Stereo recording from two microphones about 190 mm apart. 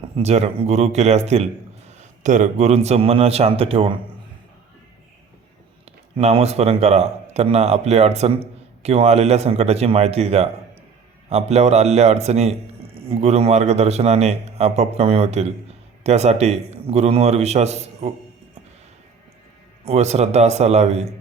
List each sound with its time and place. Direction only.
0.2 s a man's voice: 35° right (ahead or behind)
6.1 s a man's voice: 35° right (ahead or behind)
19.8 s a man's voice: 35° right (ahead or behind)